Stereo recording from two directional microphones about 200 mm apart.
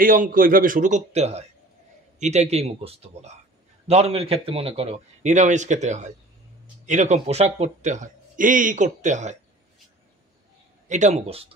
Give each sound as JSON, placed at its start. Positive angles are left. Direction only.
{"t": 0.0, "sound": "speech", "side_deg": -45}
{"t": 10.9, "sound": "speech", "side_deg": -35}